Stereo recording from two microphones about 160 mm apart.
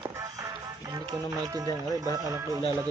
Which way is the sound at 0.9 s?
25° right (ahead or behind).